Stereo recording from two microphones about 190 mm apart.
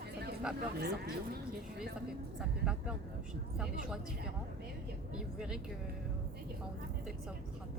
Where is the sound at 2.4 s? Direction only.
5° right (ahead or behind).